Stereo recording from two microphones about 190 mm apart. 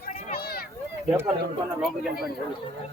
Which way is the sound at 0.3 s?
55° left (ahead or behind).